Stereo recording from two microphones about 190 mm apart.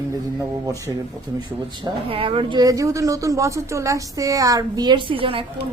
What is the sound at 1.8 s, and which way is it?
Speech, 30° right (ahead or behind).